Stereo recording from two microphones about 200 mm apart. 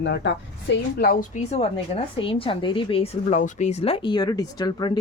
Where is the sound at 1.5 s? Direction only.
30° left (ahead or behind).